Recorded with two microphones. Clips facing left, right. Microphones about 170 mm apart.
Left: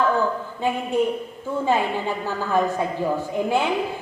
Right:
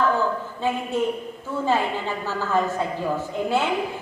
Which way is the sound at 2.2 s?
15° left (ahead or behind).